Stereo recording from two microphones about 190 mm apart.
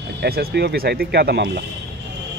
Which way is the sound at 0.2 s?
55° right (ahead or behind).